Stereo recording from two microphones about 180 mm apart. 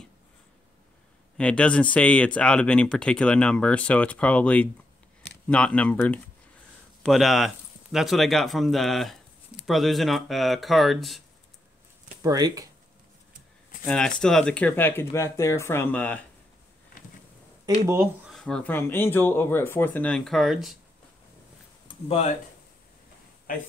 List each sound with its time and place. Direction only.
1.4 s speech: 5° left (ahead or behind)
12.2 s speech: 20° right (ahead or behind)
13.8 s speech: 5° left (ahead or behind)
18.3 s speech: 5° left (ahead or behind)
21.8 s a sound: 35° left (ahead or behind)